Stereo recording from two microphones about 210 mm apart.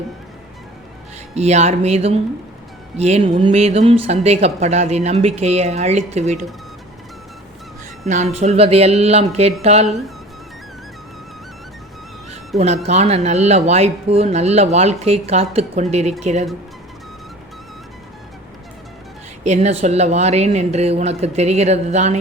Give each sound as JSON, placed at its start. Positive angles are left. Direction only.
{"t": 1.4, "sound": "speech", "side_deg": -30}
{"t": 8.0, "sound": "speech", "side_deg": -35}
{"t": 12.5, "sound": "speech", "side_deg": -30}
{"t": 19.5, "sound": "speech", "side_deg": -30}